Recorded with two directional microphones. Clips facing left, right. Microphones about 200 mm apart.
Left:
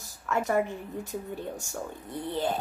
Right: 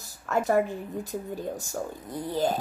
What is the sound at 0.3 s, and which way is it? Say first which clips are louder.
Speech: right 3 dB; 35° right (ahead or behind).